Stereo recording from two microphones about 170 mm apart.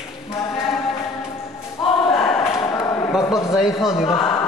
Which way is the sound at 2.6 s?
20° left (ahead or behind).